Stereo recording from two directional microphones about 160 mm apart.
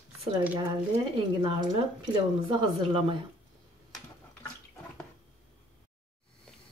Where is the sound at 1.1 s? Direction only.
30° right (ahead or behind).